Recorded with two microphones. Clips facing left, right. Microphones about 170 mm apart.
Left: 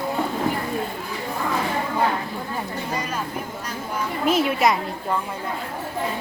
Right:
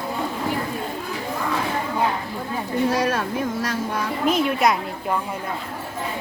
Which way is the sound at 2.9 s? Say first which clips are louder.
Right 6 dB; 90° right.